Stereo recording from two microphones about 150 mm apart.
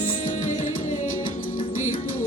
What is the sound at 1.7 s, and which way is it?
Music, 60° left (ahead or behind).